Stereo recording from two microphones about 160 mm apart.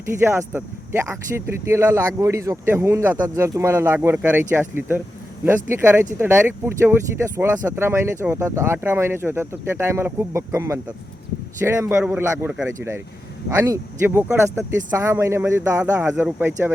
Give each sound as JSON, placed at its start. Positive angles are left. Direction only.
{"t": 0.2, "sound": "speech", "side_deg": -15}